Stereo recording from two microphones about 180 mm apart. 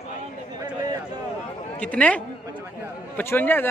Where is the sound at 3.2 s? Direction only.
10° left (ahead or behind).